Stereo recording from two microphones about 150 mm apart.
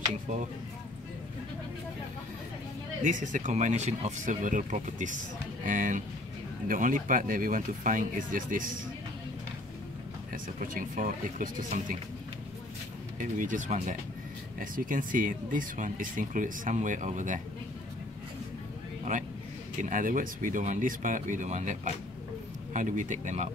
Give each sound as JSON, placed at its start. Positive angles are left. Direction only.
{"t": 3.0, "sound": "speech", "side_deg": -60}
{"t": 10.3, "sound": "speech", "side_deg": -65}
{"t": 13.2, "sound": "speech", "side_deg": -60}
{"t": 14.6, "sound": "speech", "side_deg": -65}
{"t": 19.8, "sound": "speech", "side_deg": -60}